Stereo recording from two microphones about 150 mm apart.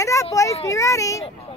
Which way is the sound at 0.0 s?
20° left (ahead or behind).